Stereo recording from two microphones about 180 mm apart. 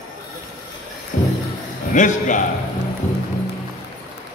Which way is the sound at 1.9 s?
45° left (ahead or behind).